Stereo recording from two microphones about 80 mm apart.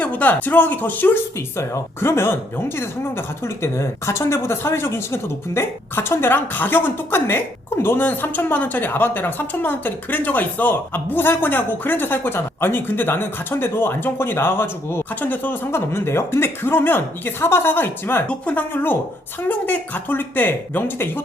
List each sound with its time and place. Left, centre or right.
0.0 s speech: centre